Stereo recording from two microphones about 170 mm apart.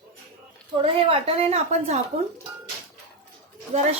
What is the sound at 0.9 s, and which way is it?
A woman's voice, 30° right (ahead or behind).